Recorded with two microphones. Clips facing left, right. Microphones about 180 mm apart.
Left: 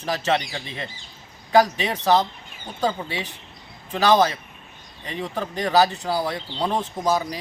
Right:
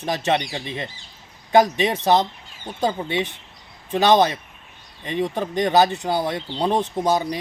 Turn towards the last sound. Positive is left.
turn(degrees=-25)  # may be behind; listen again after turning